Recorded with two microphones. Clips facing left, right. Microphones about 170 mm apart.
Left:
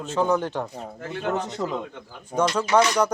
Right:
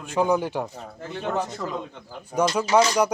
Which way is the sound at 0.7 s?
15° left (ahead or behind).